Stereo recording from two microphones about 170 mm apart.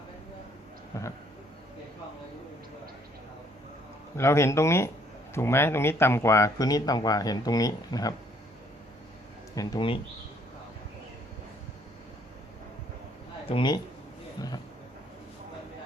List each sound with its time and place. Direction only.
0.9 s speech: 15° left (ahead or behind)
4.2 s speech: 15° left (ahead or behind)
9.6 s speech: 25° left (ahead or behind)
13.5 s speech: 25° left (ahead or behind)